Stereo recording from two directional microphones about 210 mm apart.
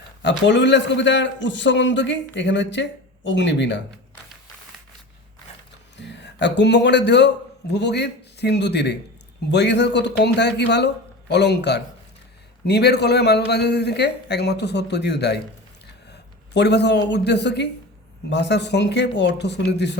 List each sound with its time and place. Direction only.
0.2 s a man's voice: 55° left (ahead or behind)
6.0 s a man's voice: 55° left (ahead or behind)
16.6 s a man's voice: 55° left (ahead or behind)